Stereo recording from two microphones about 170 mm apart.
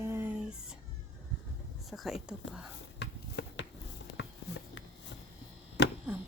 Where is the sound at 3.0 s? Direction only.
85° left.